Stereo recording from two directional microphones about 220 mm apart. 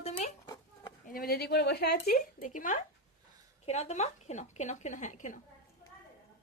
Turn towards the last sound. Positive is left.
turn(degrees=35)  # may be behind; listen again after turning